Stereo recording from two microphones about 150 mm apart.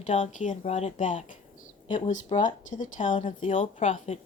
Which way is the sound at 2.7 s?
60° left (ahead or behind).